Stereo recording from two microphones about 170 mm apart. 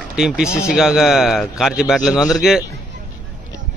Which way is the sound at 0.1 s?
5° right (ahead or behind).